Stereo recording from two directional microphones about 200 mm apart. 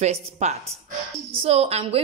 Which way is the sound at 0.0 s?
35° right (ahead or behind).